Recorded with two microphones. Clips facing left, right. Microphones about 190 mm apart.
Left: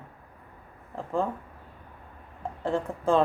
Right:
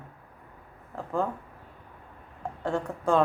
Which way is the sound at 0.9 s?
Centre (ahead or behind).